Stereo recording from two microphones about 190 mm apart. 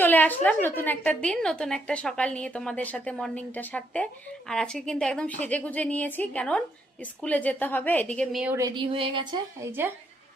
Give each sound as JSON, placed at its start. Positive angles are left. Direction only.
{"t": 0.0, "sound": "a woman's voice", "side_deg": 10}
{"t": 8.5, "sound": "speech", "side_deg": -20}